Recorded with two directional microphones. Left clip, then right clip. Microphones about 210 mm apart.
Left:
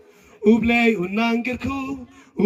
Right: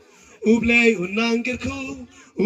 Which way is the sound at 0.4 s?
55° left (ahead or behind).